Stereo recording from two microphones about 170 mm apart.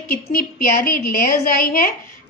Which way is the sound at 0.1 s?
60° left (ahead or behind).